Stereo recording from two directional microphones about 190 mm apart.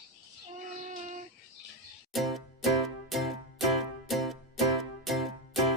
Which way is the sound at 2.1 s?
Centre (ahead or behind).